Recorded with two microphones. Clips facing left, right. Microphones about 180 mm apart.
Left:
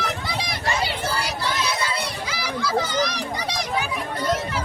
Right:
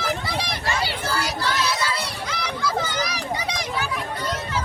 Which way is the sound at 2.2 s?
5° left (ahead or behind).